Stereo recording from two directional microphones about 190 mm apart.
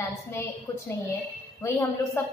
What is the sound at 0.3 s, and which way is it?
A woman's voice, 10° left (ahead or behind).